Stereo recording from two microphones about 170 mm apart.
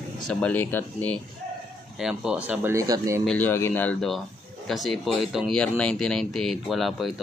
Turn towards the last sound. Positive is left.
turn(degrees=0)  # may be behind; listen again after turning